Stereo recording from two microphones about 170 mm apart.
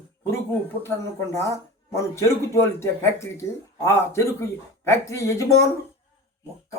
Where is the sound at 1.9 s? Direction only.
15° left (ahead or behind).